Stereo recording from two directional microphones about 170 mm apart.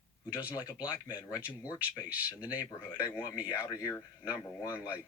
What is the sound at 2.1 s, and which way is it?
Speech, 10° right (ahead or behind).